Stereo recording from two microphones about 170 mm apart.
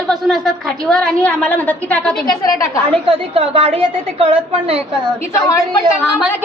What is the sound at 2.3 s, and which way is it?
Speech, 20° left (ahead or behind).